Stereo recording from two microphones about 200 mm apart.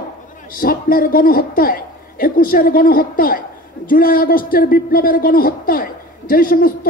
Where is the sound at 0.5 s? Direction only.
45° left (ahead or behind).